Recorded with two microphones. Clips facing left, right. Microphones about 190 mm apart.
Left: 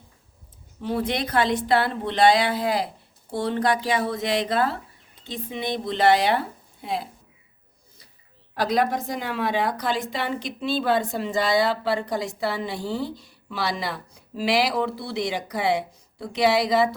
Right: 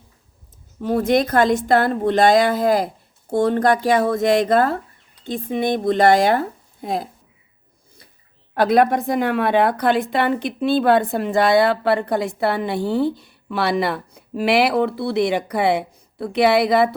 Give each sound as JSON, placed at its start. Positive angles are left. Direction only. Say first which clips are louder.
{"t": 0.8, "sound": "speech", "louder": "right 8 dB", "side_deg": -45}
{"t": 8.5, "sound": "a woman's voice", "louder": "right 7 dB", "side_deg": -60}